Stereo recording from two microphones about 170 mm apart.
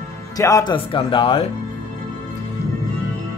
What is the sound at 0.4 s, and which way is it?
Speech, 20° left (ahead or behind).